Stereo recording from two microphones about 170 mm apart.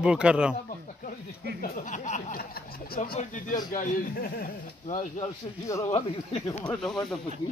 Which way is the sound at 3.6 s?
50° left (ahead or behind).